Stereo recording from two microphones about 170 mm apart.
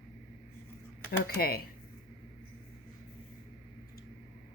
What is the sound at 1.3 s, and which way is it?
Speech, 65° left (ahead or behind).